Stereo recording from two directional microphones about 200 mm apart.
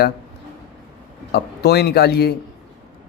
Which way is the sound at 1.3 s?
55° left (ahead or behind).